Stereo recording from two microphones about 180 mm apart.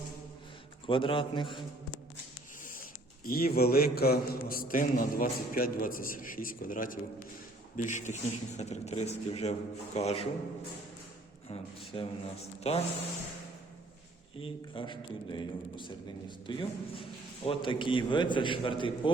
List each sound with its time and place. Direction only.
0.9 s a man's voice: 30° left (ahead or behind)
2.7 s a man's voice: 50° left (ahead or behind); by 10.2 s 35° left (ahead or behind)
11.4 s speech: 30° left (ahead or behind)
14.3 s a man's voice: 30° left (ahead or behind)